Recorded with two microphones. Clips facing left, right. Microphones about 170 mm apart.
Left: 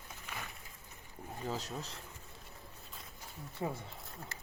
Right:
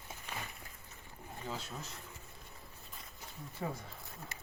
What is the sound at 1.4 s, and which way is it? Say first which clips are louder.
Speech: left 4 dB; 40° left (ahead or behind).